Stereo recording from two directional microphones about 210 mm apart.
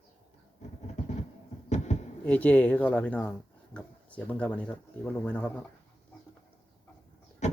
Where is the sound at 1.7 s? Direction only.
35° left (ahead or behind).